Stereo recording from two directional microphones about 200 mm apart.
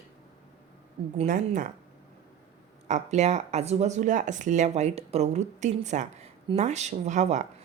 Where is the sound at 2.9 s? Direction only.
35° right (ahead or behind).